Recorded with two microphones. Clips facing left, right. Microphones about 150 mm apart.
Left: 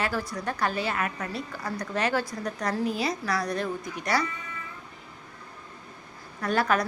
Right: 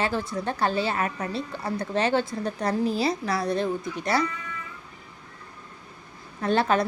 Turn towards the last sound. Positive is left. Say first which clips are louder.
# right 3 dB
turn(degrees=-25)  # may be behind; listen again after turning